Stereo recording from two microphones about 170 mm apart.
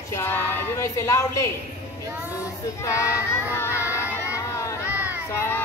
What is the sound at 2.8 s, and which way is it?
Child singing, 15° left (ahead or behind).